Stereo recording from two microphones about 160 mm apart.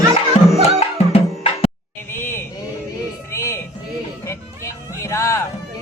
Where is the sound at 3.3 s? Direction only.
15° left (ahead or behind).